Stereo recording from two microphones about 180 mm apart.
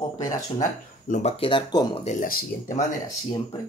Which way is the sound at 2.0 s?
35° left (ahead or behind).